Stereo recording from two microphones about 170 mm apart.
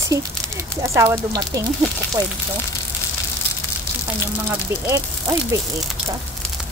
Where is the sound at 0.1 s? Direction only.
15° right (ahead or behind).